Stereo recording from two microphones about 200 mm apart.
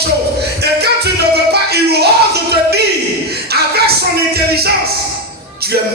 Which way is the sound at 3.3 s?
55° right (ahead or behind).